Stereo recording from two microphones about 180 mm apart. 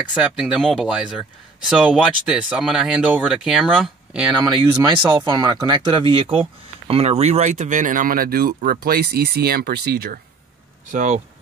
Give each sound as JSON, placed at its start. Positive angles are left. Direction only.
{"t": 0.1, "sound": "speech", "side_deg": -5}
{"t": 4.4, "sound": "speech", "side_deg": -25}
{"t": 10.9, "sound": "speech", "side_deg": -45}